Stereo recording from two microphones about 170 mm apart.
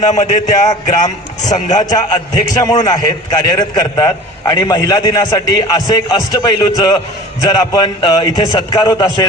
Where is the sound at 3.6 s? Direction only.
20° left (ahead or behind).